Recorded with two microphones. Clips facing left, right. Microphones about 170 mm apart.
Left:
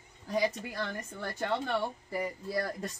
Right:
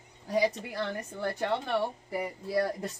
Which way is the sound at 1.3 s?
10° right (ahead or behind).